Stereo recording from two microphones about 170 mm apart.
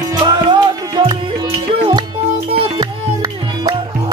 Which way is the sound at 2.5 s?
35° right (ahead or behind).